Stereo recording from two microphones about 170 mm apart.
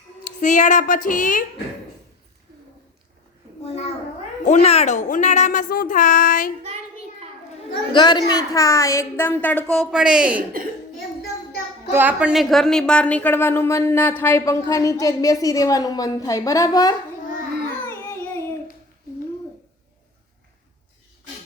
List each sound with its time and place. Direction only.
0.4 s speech: 45° left (ahead or behind)
3.7 s a sound: 40° left (ahead or behind)
4.4 s speech: 40° left (ahead or behind)
7.9 s a woman's voice: 25° left (ahead or behind); by 10.4 s 5° right (ahead or behind)
11.9 s a woman's voice: 10° right (ahead or behind); by 16.9 s 20° left (ahead or behind)
17.8 s child singing: 15° left (ahead or behind)